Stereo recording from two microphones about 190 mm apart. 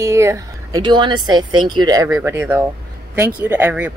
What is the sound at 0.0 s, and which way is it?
Speech, 15° right (ahead or behind).